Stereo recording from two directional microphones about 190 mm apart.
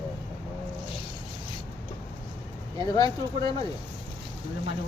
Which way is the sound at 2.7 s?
20° left (ahead or behind).